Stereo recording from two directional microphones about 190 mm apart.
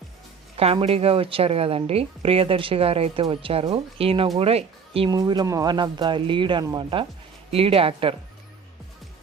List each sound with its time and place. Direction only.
0.5 s a woman's voice: 30° right (ahead or behind)